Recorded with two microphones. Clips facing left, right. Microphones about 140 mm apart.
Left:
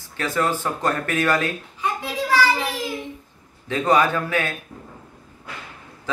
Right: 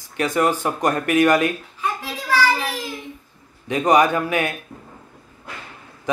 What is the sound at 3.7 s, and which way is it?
Speech, 15° right (ahead or behind).